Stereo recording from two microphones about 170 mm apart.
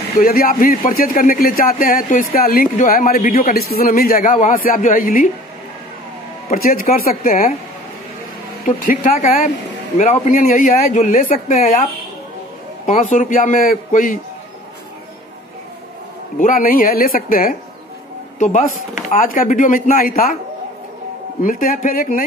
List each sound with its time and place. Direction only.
0.2 s speech: 55° left (ahead or behind)
6.5 s speech: 55° left (ahead or behind)
8.6 s speech: 55° left (ahead or behind)
16.3 s speech: 55° left (ahead or behind)
18.4 s speech: 45° left (ahead or behind)
21.4 s speech: 55° left (ahead or behind)